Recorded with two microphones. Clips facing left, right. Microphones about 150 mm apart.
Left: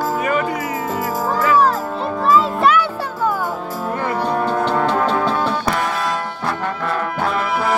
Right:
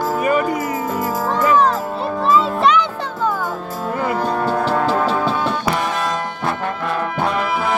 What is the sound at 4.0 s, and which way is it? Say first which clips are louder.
Music: right 1 dB; 5° right (ahead or behind).